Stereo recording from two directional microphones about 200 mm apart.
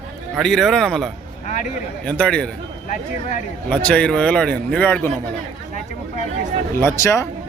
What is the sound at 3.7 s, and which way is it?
A man's voice, 5° left (ahead or behind).